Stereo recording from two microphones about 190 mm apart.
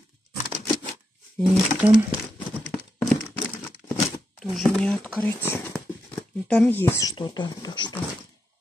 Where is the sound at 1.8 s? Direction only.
10° right (ahead or behind).